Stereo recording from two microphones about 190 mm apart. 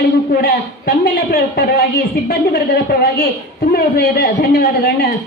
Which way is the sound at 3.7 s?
55° left (ahead or behind).